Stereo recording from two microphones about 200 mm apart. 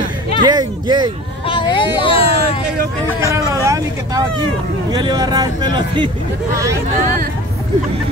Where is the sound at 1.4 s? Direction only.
25° left (ahead or behind).